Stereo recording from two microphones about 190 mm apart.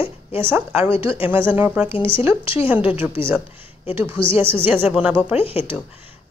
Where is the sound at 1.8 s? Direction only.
30° left (ahead or behind).